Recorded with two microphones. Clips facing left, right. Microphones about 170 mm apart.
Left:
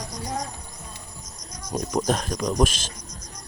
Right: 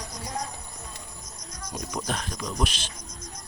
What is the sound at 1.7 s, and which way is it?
Speech, 45° left (ahead or behind).